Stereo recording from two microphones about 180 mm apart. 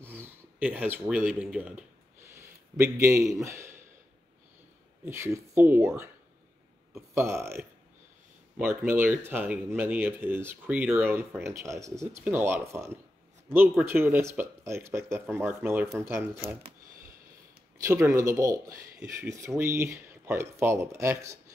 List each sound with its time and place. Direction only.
0.0 s a sound: 10° right (ahead or behind)
3.4 s speech: 15° right (ahead or behind)
5.0 s speech: 15° right (ahead or behind)
7.2 s speech: 15° right (ahead or behind)
17.8 s speech: 15° right (ahead or behind)